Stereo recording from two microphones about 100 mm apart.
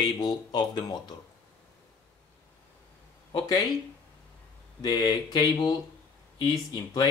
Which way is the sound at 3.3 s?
40° left (ahead or behind).